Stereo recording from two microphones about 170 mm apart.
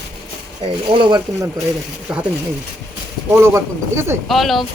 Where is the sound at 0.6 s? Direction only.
30° right (ahead or behind).